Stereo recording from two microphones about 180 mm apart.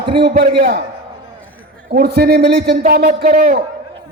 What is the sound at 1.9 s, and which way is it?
A man's voice, 60° right (ahead or behind).